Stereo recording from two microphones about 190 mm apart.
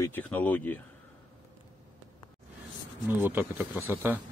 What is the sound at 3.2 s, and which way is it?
Speech, 10° right (ahead or behind).